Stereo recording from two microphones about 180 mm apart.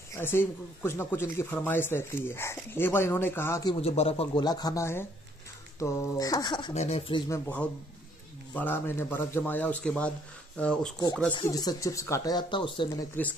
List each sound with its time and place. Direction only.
0.1 s speech: 10° left (ahead or behind)
3.8 s speech: 35° left (ahead or behind)
6.7 s speech: 35° left (ahead or behind)
7.2 s speech: 10° left (ahead or behind)
11.4 s speech: 20° left (ahead or behind)
13.1 s speech: 10° left (ahead or behind)